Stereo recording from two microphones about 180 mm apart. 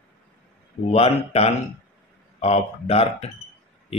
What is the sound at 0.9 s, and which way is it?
Speech, 35° left (ahead or behind).